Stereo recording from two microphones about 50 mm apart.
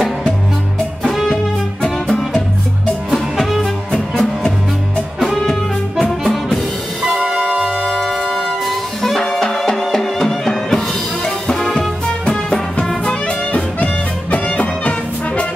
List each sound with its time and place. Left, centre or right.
1.0 s music: centre
3.3 s music: centre
3.9 s music: centre
7.2 s music: centre
12.3 s music: centre
13.0 s music: left